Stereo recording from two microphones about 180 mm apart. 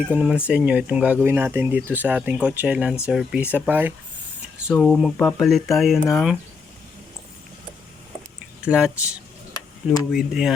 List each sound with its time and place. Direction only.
0.1 s speech: 5° right (ahead or behind)
4.7 s speech: 5° left (ahead or behind)
8.6 s speech: 5° right (ahead or behind)
9.5 s a sound: 20° left (ahead or behind)
10.1 s speech: 5° right (ahead or behind)